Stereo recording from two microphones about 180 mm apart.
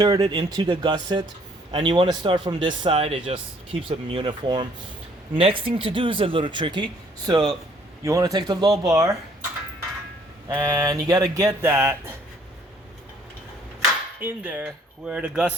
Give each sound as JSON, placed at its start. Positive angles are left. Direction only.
{"t": 0.0, "sound": "speech", "side_deg": -20}
{"t": 10.5, "sound": "speech", "side_deg": -15}
{"t": 14.2, "sound": "speech", "side_deg": -10}